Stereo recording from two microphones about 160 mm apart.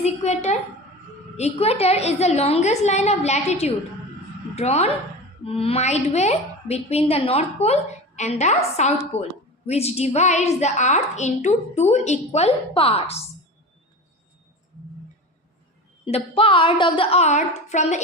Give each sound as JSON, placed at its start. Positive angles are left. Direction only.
{"t": 0.0, "sound": "a woman's voice", "side_deg": 45}
{"t": 16.0, "sound": "a woman's voice", "side_deg": 35}